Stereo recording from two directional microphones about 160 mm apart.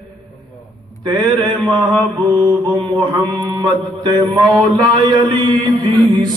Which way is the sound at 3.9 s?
25° right (ahead or behind).